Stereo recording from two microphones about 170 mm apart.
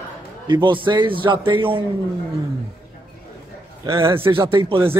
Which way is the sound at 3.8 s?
15° right (ahead or behind).